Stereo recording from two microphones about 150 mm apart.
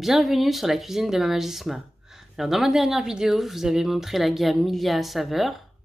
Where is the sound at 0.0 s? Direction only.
Centre (ahead or behind).